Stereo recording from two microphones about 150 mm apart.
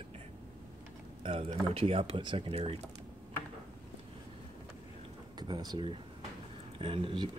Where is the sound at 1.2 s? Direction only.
35° right (ahead or behind).